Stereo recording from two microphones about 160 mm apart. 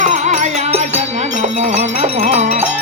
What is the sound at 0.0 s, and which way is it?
Music, 50° right (ahead or behind).